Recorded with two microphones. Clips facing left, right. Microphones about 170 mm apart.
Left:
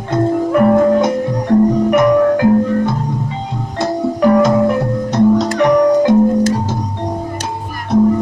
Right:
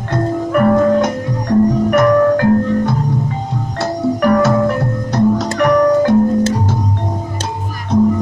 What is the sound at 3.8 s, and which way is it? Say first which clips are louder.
Music: left 1 dB; 15° left (ahead or behind).